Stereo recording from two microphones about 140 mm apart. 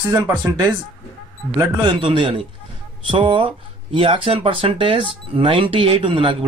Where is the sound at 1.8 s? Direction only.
35° right (ahead or behind).